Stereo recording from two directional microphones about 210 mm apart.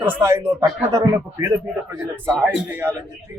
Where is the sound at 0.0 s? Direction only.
15° right (ahead or behind).